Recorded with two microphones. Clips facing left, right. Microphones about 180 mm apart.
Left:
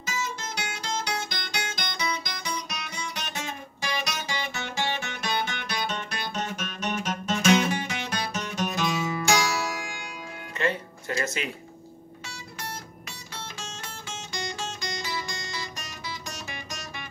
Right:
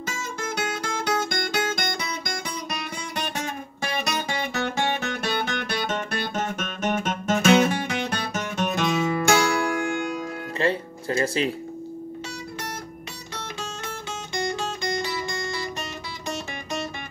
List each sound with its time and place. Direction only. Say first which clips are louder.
0.0 s guitar: right 2 dB; 50° right (ahead or behind)
9.8 s music: right 12 dB; 55° right (ahead or behind)
10.6 s music: right 3 dB; 30° right (ahead or behind)
13.8 s guitar: right 6 dB; 55° right (ahead or behind)